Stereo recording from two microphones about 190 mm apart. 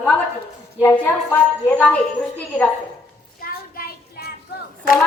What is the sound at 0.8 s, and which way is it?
A woman's voice, 10° left (ahead or behind).